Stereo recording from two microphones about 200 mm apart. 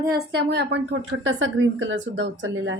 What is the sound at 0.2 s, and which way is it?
A woman's voice, 55° right (ahead or behind).